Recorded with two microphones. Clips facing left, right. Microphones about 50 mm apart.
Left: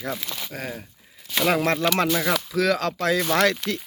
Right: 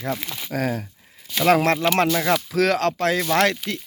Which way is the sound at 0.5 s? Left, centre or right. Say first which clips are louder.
Right 11 dB; right.